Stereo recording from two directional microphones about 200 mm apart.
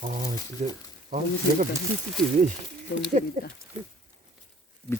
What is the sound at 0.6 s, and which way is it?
Speech, 35° right (ahead or behind).